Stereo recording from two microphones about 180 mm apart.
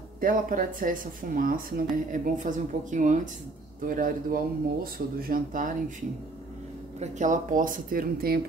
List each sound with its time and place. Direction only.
0.2 s speech: 50° right (ahead or behind)